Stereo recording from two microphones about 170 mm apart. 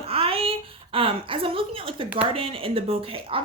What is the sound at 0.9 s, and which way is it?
A woman's voice, 30° right (ahead or behind).